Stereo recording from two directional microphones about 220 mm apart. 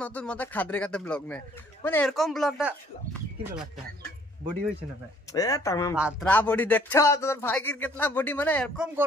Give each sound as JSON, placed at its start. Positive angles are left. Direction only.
{"t": 0.0, "sound": "speech", "side_deg": 5}
{"t": 5.3, "sound": "speech", "side_deg": 15}
{"t": 5.9, "sound": "speech", "side_deg": -5}
{"t": 6.2, "sound": "speech", "side_deg": 5}
{"t": 8.7, "sound": "speech", "side_deg": -5}